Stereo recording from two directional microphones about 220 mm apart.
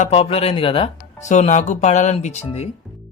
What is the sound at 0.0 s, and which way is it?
Speech, 25° left (ahead or behind).